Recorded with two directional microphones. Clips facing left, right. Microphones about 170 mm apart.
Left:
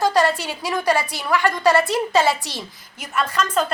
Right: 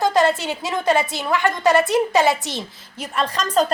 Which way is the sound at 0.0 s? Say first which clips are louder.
Right 1 dB; 20° right (ahead or behind).